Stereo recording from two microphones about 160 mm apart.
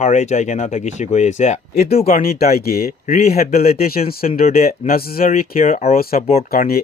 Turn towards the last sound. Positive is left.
turn(degrees=70)  # may be behind; listen again after turning